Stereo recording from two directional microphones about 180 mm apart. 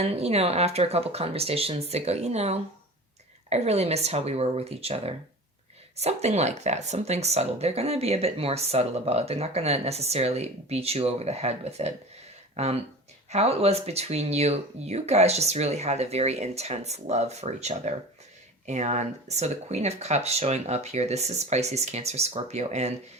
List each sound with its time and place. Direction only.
0.0 s speech: 35° right (ahead or behind)